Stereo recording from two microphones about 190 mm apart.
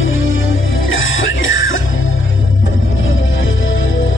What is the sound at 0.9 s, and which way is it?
Music, 90° left.